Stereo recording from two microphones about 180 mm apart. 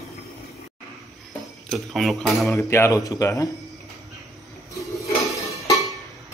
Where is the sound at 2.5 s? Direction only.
15° left (ahead or behind).